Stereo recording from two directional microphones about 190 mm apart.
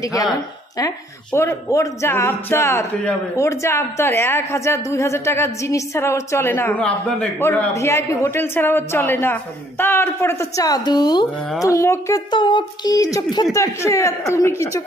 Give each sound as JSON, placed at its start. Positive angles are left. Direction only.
{"t": 0.0, "sound": "a woman's voice", "side_deg": 20}